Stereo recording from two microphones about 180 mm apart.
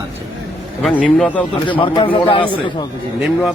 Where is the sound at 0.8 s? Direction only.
Centre (ahead or behind).